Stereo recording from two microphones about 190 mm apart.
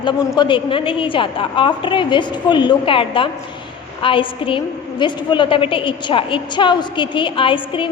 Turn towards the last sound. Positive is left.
turn(degrees=25)  # may be behind; listen again after turning